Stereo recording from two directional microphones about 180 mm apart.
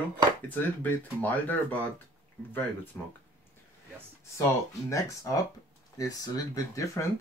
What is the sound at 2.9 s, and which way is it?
Speech, 10° left (ahead or behind).